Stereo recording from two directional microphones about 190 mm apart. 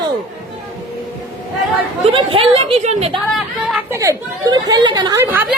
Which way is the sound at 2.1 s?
30° right (ahead or behind).